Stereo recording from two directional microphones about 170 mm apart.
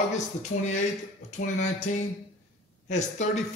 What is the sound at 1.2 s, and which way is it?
Speech, 45° left (ahead or behind).